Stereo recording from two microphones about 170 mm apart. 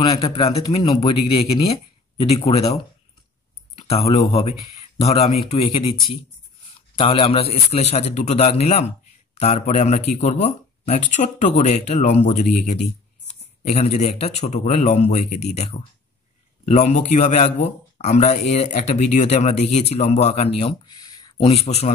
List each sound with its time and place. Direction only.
0.0 s speech: 35° left (ahead or behind)
21.0 s a sound: 25° left (ahead or behind)
21.5 s speech: 40° left (ahead or behind)